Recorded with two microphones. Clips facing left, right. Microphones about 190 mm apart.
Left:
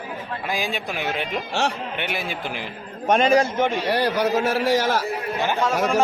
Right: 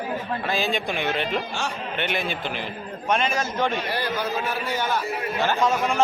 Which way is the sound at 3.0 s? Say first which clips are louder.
Left 7 dB; 40° left (ahead or behind).